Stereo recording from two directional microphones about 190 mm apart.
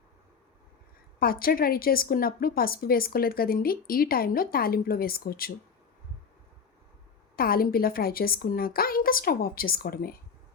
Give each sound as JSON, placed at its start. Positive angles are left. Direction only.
{"t": 1.2, "sound": "a woman's voice", "side_deg": 50}
{"t": 7.3, "sound": "a woman's voice", "side_deg": 50}